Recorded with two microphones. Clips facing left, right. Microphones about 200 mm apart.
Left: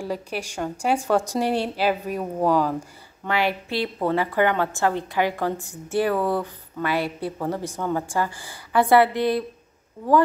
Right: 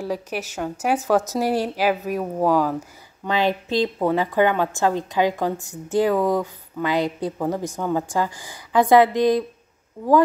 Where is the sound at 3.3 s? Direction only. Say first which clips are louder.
Right 3 dB; 20° right (ahead or behind).